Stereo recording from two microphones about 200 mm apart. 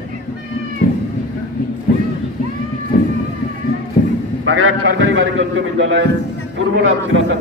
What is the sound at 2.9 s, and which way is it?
Run, 40° left (ahead or behind).